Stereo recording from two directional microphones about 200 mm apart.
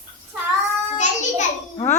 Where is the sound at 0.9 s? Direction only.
35° left (ahead or behind).